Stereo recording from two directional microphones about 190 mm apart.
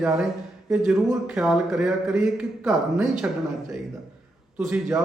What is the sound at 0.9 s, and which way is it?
Speech, 5° right (ahead or behind).